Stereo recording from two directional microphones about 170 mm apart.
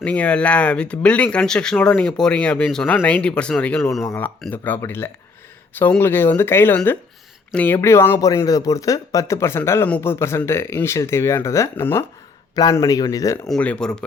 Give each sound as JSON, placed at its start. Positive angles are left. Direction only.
{"t": 0.0, "sound": "speech", "side_deg": 10}
{"t": 13.5, "sound": "speech", "side_deg": 5}